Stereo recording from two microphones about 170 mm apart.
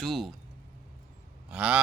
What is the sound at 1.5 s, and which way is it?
Gasp, 5° right (ahead or behind).